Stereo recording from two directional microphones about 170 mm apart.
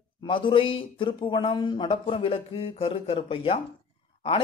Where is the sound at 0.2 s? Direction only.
30° left (ahead or behind).